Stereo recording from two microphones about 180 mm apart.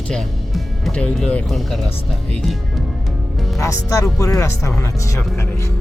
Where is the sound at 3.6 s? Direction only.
15° left (ahead or behind).